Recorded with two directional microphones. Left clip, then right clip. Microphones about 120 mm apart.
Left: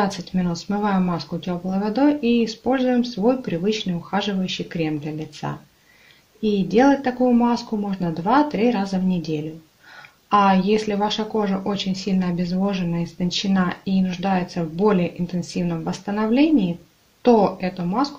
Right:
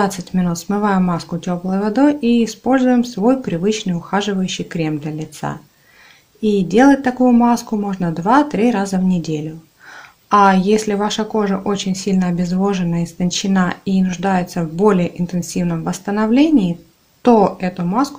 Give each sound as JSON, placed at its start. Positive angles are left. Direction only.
{"t": 0.0, "sound": "speech", "side_deg": -45}